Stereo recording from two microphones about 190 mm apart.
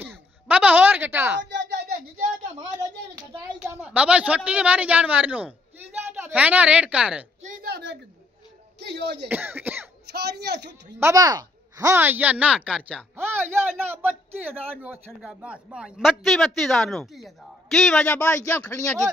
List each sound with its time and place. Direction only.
0.0 s a sound: 10° right (ahead or behind)
3.2 s a woman's voice: 10° right (ahead or behind)
7.5 s a sound: 55° right (ahead or behind)
8.7 s speech: 60° right (ahead or behind)
9.3 s speech: 10° right (ahead or behind)
10.1 s a man's voice: 60° right (ahead or behind)
11.0 s speech: 15° right (ahead or behind); by 18.9 s 15° left (ahead or behind)